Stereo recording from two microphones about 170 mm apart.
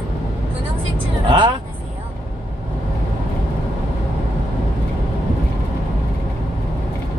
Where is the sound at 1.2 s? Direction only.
30° right (ahead or behind).